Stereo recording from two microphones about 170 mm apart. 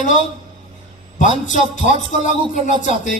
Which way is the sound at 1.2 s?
50° left (ahead or behind).